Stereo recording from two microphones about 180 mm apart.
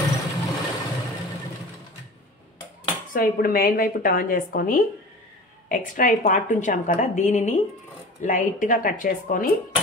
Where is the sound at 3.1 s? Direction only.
55° left (ahead or behind).